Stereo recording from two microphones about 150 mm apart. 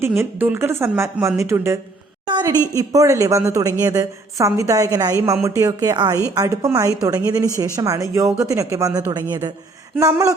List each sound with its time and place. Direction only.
0.2 s speech: 15° right (ahead or behind)